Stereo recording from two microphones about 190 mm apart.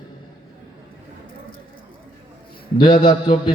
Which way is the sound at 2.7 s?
25° left (ahead or behind).